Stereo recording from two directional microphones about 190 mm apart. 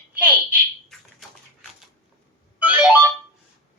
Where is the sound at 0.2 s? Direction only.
10° right (ahead or behind).